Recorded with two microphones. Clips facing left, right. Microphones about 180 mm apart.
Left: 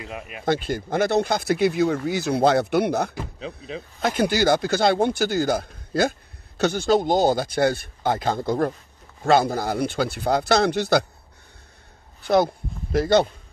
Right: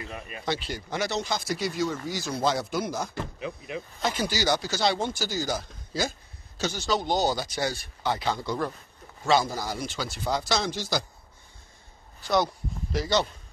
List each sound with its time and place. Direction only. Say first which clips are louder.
0.5 s speech: left 8 dB; 50° left (ahead or behind)
4.0 s speech: left 8 dB; 55° left (ahead or behind)
12.3 s speech: left 6 dB; 55° left (ahead or behind)